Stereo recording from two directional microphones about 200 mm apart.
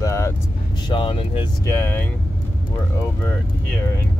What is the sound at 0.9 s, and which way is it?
Speech, 25° left (ahead or behind).